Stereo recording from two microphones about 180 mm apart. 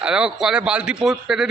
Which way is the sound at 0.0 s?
5° right (ahead or behind).